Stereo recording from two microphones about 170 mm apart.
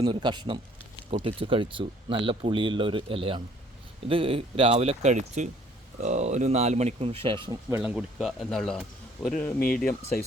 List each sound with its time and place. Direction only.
0.0 s speech: 25° right (ahead or behind)
7.8 s speech: 5° right (ahead or behind)